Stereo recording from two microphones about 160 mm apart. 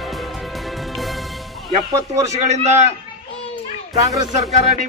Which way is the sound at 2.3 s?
45° right (ahead or behind).